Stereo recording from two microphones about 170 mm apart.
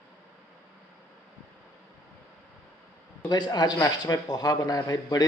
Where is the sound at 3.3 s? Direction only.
25° left (ahead or behind).